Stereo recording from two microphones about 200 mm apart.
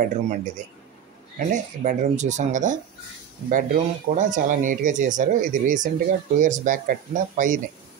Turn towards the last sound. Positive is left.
turn(degrees=-40)  # may be behind; listen again after turning